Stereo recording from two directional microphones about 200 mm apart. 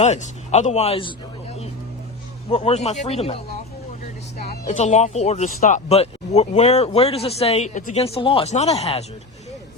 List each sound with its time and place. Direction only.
0.0 s speech: 35° left (ahead or behind)
2.5 s speech: 30° left (ahead or behind)
4.6 s speech: 35° left (ahead or behind)